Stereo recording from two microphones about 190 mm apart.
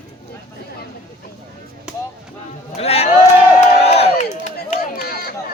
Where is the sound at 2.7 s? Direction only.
35° left (ahead or behind).